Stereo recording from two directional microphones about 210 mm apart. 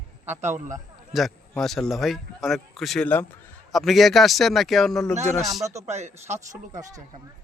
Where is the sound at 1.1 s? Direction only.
Centre (ahead or behind).